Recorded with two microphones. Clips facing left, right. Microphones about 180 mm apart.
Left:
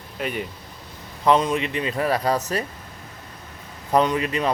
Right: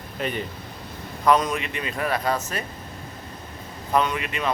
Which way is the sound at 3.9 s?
35° left (ahead or behind).